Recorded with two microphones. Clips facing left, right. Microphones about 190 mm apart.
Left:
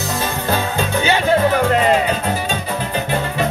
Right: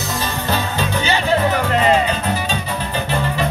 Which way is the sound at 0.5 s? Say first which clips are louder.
Left 2 dB; 50° left (ahead or behind).